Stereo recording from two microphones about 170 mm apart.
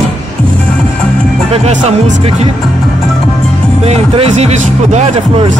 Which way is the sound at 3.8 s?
35° right (ahead or behind).